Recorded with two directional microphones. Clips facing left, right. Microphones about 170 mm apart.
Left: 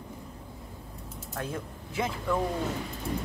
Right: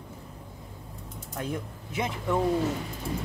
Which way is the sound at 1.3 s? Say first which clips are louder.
Right 2 dB; 20° right (ahead or behind).